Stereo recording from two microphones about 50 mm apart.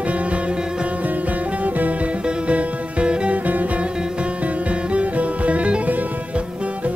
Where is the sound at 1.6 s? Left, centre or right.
Right.